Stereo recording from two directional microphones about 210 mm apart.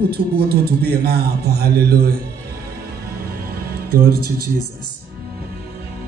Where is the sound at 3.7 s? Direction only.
45° right (ahead or behind).